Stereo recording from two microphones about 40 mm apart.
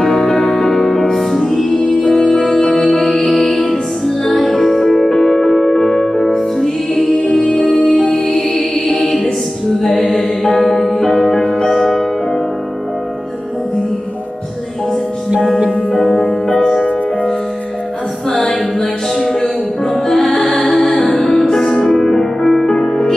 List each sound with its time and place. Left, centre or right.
0.0 s music: centre
7.7 s music: left
8.5 s music: centre
16.0 s music: centre
18.5 s music: left
19.9 s music: centre